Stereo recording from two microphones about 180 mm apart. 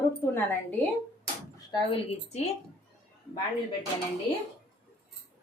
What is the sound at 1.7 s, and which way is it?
Speech, 35° left (ahead or behind).